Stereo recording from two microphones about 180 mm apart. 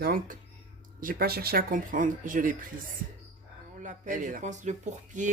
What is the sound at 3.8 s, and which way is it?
Speech, 45° right (ahead or behind).